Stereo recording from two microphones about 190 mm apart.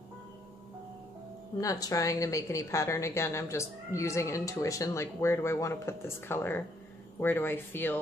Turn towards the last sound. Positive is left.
turn(degrees=10)  # may be behind; listen again after turning